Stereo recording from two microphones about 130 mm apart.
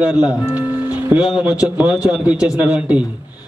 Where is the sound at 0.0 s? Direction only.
10° right (ahead or behind).